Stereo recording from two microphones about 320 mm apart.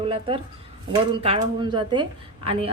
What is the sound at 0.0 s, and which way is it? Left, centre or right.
A woman's voice, centre.